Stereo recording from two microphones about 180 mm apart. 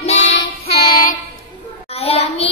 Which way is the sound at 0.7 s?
50° left (ahead or behind).